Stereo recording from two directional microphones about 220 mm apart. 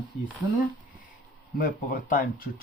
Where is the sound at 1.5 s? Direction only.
40° left (ahead or behind).